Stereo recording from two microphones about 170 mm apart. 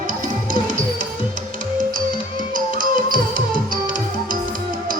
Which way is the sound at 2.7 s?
55° right (ahead or behind).